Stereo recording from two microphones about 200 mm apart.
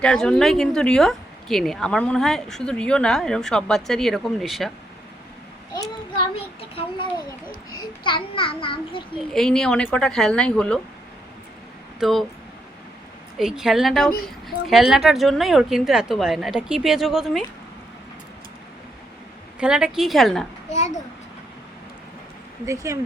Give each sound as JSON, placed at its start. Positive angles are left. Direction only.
{"t": 0.0, "sound": "speech", "side_deg": 5}
{"t": 5.7, "sound": "a child's voice", "side_deg": 20}
{"t": 9.3, "sound": "speech", "side_deg": 5}
{"t": 11.9, "sound": "speech", "side_deg": 0}
{"t": 13.4, "sound": "speech", "side_deg": 0}
{"t": 19.5, "sound": "speech", "side_deg": -5}
{"t": 20.7, "sound": "a child's voice", "side_deg": 35}
{"t": 22.6, "sound": "speech", "side_deg": -15}